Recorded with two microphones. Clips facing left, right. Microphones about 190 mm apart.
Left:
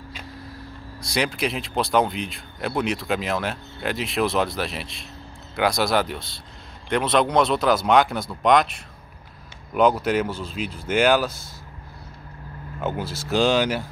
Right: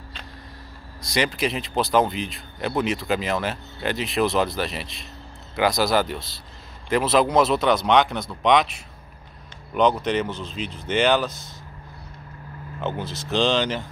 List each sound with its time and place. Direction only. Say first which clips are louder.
1.0 s speech: right 1 dB; centre (ahead or behind)
12.8 s speech: left 1 dB; 5° left (ahead or behind)